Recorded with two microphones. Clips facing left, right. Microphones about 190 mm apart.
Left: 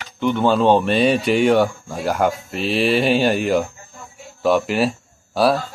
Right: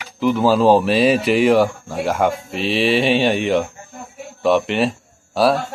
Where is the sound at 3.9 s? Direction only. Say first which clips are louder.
Right 6 dB; 60° right (ahead or behind).